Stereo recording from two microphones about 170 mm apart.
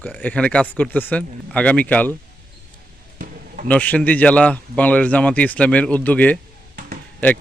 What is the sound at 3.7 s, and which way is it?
A man's voice, 10° left (ahead or behind).